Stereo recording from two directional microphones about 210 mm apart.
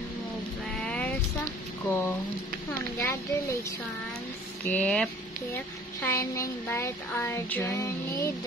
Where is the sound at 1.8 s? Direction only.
10° left (ahead or behind).